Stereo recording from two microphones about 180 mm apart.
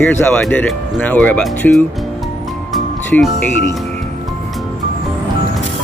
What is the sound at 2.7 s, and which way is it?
Music, 5° left (ahead or behind).